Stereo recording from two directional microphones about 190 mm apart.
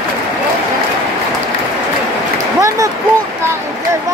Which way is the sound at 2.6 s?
15° right (ahead or behind).